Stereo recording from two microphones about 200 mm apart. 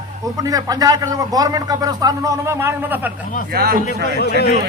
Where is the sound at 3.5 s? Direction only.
50° right (ahead or behind).